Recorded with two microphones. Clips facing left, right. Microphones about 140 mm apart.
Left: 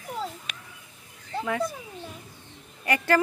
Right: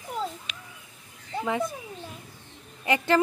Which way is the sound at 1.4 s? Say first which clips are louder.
Even; 20° right (ahead or behind).